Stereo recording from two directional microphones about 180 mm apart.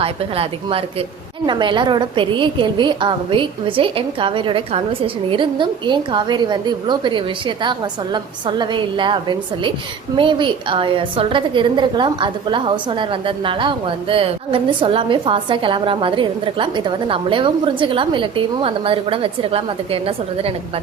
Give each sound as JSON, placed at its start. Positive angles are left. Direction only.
{"t": 0.0, "sound": "a woman's voice", "side_deg": -30}